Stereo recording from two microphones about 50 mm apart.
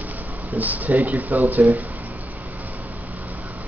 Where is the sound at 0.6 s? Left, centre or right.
Right.